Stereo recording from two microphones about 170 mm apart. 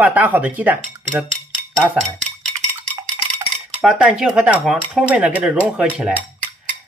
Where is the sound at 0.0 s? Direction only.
10° right (ahead or behind).